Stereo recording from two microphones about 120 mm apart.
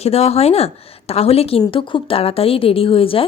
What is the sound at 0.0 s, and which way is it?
A woman's voice, 60° left (ahead or behind).